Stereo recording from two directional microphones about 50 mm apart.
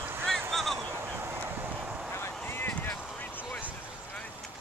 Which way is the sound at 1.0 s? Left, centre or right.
Right.